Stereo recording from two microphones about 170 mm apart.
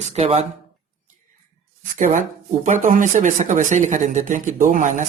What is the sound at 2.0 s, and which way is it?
Speech, 50° right (ahead or behind).